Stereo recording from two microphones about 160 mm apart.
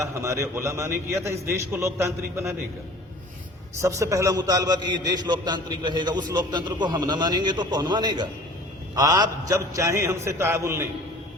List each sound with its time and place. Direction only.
0.0 s a man's voice: 20° right (ahead or behind)
3.8 s a man's voice: 20° right (ahead or behind)